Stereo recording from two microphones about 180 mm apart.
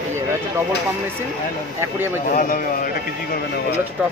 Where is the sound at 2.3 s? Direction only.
50° left (ahead or behind).